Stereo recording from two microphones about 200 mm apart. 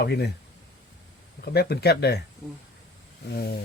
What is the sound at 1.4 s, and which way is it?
Speech, 55° left (ahead or behind).